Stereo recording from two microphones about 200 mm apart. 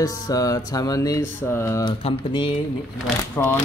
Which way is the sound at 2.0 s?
25° left (ahead or behind).